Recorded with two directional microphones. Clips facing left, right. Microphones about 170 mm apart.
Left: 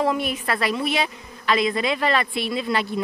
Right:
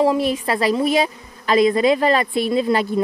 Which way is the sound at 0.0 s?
30° right (ahead or behind).